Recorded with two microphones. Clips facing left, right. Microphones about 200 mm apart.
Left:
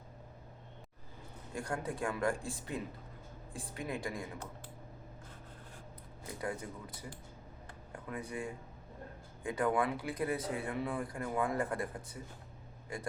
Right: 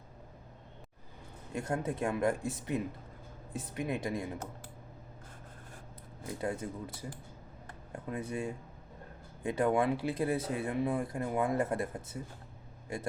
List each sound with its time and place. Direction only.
1.5 s speech: 20° right (ahead or behind)
6.4 s speech: 25° right (ahead or behind)